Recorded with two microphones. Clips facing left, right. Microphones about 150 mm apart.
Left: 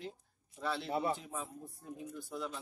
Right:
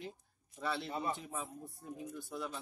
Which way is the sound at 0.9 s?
75° left (ahead or behind).